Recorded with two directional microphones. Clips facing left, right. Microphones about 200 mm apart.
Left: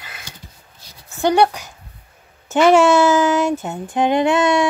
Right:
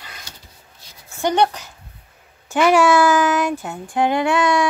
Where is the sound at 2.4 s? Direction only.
25° left (ahead or behind).